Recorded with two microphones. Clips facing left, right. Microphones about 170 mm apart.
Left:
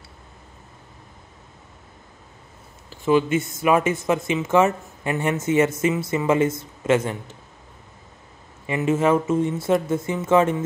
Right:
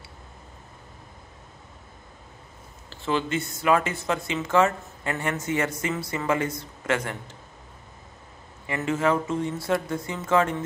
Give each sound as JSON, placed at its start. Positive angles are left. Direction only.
{"t": 2.9, "sound": "speech", "side_deg": 15}
{"t": 8.6, "sound": "speech", "side_deg": 20}